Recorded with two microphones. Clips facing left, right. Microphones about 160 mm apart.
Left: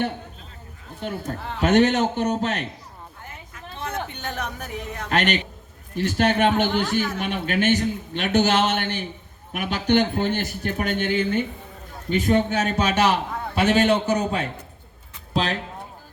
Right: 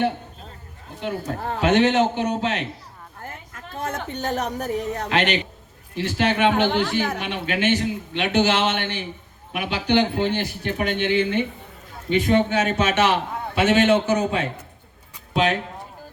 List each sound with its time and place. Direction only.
1.2 s speech: 45° right (ahead or behind)
1.6 s a man's voice: 45° left (ahead or behind)
3.2 s a sound: 50° right (ahead or behind)
5.0 s a man's voice: 45° left (ahead or behind)